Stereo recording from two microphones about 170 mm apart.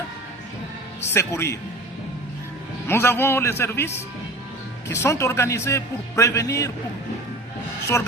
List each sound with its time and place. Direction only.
1.1 s a man's voice: 15° left (ahead or behind)
2.8 s a man's voice: 15° left (ahead or behind)